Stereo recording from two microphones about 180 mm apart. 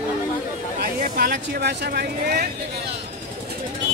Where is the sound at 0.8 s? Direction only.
60° right (ahead or behind).